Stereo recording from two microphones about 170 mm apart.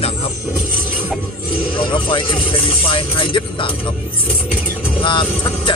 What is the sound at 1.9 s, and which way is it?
Speech, 30° left (ahead or behind).